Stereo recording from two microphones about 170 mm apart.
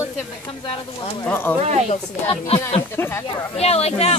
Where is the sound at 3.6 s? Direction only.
40° left (ahead or behind).